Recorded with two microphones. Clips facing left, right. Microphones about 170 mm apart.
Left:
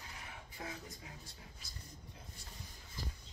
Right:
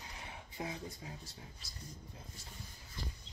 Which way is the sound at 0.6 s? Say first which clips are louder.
Right 4 dB; 25° right (ahead or behind).